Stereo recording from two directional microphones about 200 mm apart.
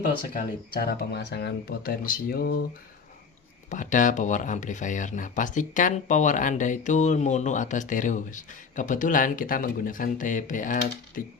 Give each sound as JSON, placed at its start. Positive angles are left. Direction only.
{"t": 0.3, "sound": "speech", "side_deg": 50}
{"t": 3.7, "sound": "speech", "side_deg": 40}